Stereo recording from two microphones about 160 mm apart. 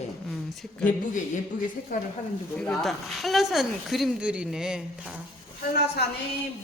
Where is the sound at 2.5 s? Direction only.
5° left (ahead or behind).